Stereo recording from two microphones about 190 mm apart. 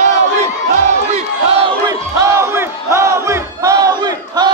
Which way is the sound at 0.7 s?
35° right (ahead or behind).